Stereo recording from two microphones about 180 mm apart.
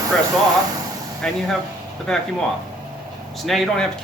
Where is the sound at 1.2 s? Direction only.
5° left (ahead or behind).